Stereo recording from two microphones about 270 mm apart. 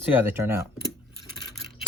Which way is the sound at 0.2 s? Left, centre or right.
Centre.